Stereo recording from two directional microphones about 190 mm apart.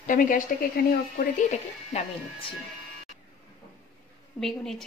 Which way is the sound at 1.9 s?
35° left (ahead or behind).